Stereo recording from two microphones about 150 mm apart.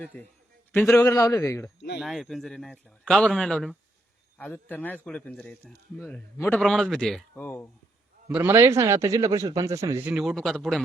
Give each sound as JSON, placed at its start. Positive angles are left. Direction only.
{"t": 0.0, "sound": "a man's voice", "side_deg": 10}
{"t": 2.0, "sound": "speech", "side_deg": 0}
{"t": 7.3, "sound": "speech", "side_deg": 10}
{"t": 8.3, "sound": "a man's voice", "side_deg": -10}
{"t": 10.1, "sound": "speech", "side_deg": 0}